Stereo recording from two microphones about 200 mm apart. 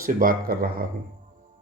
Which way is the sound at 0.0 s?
45° right (ahead or behind).